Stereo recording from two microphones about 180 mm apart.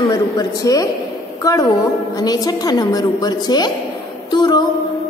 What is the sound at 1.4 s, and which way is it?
A woman's voice, 20° left (ahead or behind).